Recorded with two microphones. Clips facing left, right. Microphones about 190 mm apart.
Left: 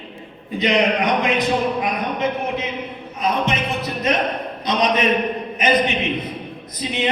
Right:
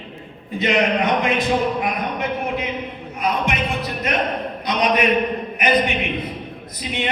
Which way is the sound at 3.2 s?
20° left (ahead or behind).